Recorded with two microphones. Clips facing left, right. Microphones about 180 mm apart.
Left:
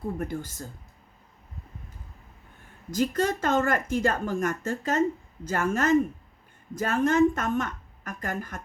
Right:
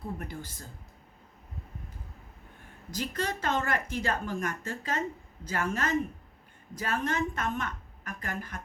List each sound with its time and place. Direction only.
0.2 s speech: 45° left (ahead or behind)
2.9 s speech: 45° left (ahead or behind)